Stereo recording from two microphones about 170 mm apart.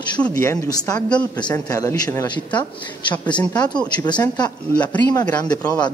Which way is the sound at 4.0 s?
25° left (ahead or behind).